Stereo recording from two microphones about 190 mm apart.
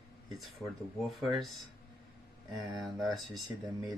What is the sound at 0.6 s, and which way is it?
Speech, 5° left (ahead or behind).